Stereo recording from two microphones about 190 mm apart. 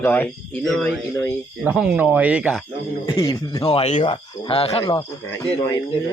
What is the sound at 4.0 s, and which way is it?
Speech, 25° left (ahead or behind).